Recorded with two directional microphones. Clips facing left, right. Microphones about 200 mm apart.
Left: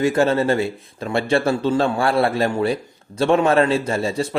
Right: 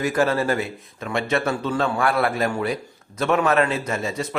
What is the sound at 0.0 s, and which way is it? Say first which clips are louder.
A man's voice: left 4 dB; 25° left (ahead or behind).